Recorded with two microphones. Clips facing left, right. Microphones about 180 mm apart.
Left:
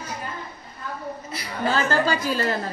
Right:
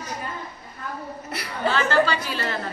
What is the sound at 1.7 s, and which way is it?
Speech, 40° left (ahead or behind).